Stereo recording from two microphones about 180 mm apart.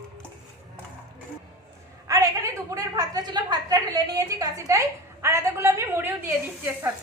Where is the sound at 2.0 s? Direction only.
20° right (ahead or behind).